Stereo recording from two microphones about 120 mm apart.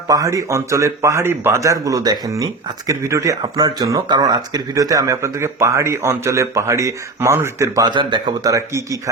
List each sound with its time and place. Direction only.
0.1 s speech: 30° right (ahead or behind)
7.9 s speech: 40° right (ahead or behind)